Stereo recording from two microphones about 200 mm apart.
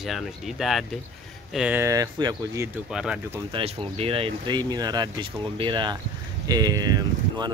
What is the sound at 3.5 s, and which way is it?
Speech, 30° right (ahead or behind).